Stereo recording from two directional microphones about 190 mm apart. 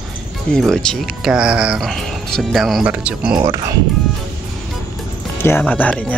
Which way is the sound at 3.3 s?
20° right (ahead or behind).